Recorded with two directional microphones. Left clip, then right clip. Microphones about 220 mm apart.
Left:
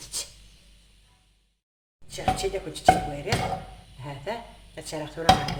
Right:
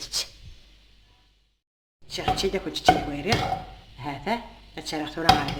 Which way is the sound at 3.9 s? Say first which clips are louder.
Right 5 dB; 35° right (ahead or behind).